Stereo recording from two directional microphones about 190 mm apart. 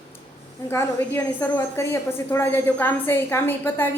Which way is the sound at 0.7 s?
10° left (ahead or behind).